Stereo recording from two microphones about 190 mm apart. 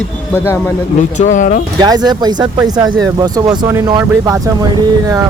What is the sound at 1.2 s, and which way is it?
Speech, 40° left (ahead or behind).